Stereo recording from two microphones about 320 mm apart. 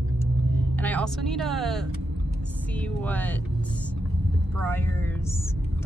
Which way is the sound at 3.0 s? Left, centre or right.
Centre.